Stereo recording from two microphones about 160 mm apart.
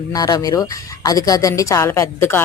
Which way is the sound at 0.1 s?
25° left (ahead or behind).